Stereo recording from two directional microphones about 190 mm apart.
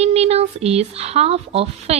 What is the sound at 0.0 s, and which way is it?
A woman's voice, 35° right (ahead or behind).